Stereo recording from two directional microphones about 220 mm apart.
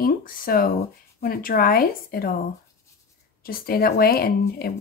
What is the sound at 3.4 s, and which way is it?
Speech, 40° left (ahead or behind).